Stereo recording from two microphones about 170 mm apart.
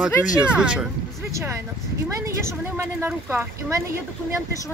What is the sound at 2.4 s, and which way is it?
A woman's voice, 15° right (ahead or behind).